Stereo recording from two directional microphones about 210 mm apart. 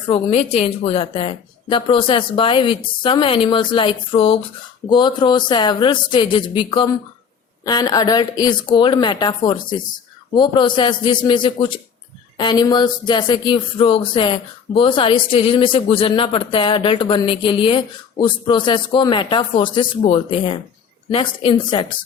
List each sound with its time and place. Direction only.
0.1 s speech: 30° left (ahead or behind)